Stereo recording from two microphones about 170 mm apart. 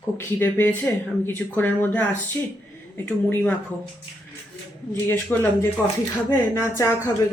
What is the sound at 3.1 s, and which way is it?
Speech, 10° left (ahead or behind).